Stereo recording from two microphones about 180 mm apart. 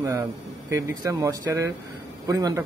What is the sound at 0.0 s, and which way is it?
Speech, 15° right (ahead or behind).